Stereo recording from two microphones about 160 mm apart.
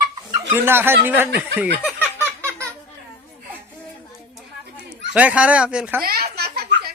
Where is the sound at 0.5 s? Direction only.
15° right (ahead or behind).